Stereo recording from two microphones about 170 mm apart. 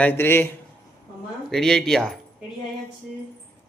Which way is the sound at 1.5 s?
5° left (ahead or behind).